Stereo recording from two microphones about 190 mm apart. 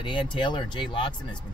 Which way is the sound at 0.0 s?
25° left (ahead or behind).